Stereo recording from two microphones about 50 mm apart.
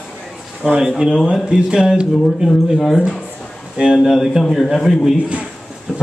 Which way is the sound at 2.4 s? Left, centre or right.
Centre.